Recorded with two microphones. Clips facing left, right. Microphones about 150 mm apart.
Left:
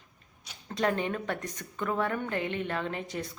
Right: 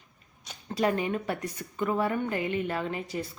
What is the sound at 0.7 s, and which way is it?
A woman's voice, 5° right (ahead or behind).